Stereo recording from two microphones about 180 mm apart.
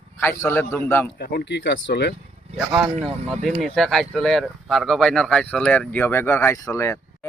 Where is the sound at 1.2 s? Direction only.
60° left (ahead or behind).